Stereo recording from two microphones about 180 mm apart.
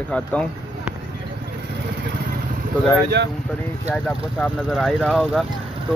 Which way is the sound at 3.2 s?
70° right (ahead or behind).